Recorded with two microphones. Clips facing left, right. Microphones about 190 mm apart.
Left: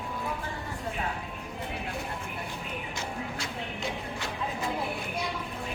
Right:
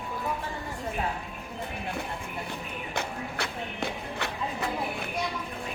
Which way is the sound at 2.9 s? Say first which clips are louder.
Right 6 dB; 60° right (ahead or behind).